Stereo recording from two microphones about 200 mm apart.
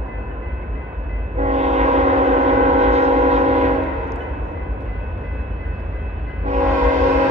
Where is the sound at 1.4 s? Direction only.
35° right (ahead or behind).